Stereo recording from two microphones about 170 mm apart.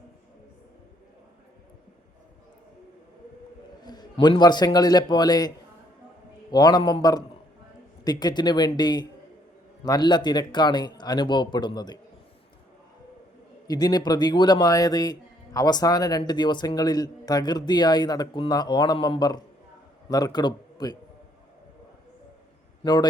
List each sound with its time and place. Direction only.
3.8 s speech: 25° left (ahead or behind)
6.5 s speech: 25° left (ahead or behind)
13.7 s a man's voice: 25° left (ahead or behind)
22.8 s a man's voice: 25° left (ahead or behind)